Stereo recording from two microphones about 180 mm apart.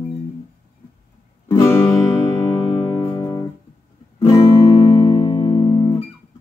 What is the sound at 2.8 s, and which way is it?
Music, 25° left (ahead or behind).